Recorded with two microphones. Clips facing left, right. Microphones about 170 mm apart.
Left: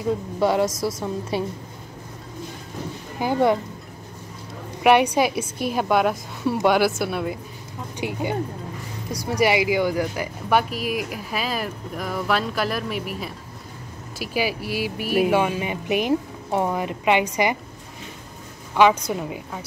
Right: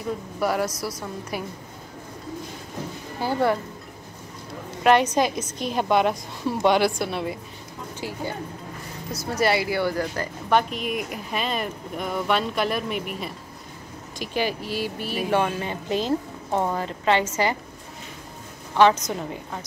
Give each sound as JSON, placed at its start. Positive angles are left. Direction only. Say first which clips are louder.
{"t": 0.4, "sound": "a woman's voice", "louder": "left 4 dB", "side_deg": 25}
{"t": 3.2, "sound": "speech", "louder": "left 3 dB", "side_deg": 15}
{"t": 4.8, "sound": "speech", "louder": "left 2 dB", "side_deg": 10}
{"t": 8.0, "sound": "speech", "louder": "left 6 dB", "side_deg": 15}
{"t": 18.8, "sound": "speech", "louder": "left 1 dB", "side_deg": 10}